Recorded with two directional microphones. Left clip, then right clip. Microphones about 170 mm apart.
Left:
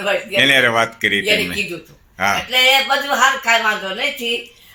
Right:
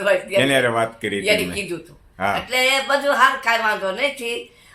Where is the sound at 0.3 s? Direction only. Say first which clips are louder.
Left 8 dB; 5° left (ahead or behind).